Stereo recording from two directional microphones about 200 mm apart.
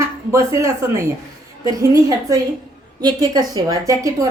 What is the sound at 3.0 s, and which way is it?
Speech, 20° right (ahead or behind).